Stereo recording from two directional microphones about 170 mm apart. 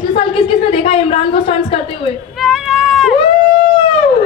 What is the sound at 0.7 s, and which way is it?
Speech, 35° left (ahead or behind).